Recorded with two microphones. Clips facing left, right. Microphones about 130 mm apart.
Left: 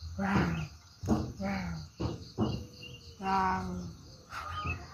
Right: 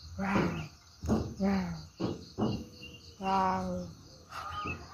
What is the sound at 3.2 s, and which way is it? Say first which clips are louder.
Cricket: right 1 dB; 15° right (ahead or behind).